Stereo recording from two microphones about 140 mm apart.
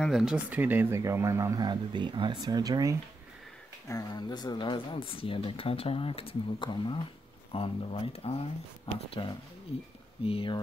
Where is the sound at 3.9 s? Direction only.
25° left (ahead or behind).